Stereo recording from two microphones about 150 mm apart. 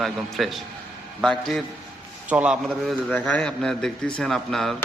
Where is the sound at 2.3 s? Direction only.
10° right (ahead or behind).